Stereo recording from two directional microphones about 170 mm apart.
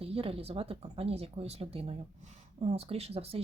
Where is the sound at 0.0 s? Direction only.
35° right (ahead or behind).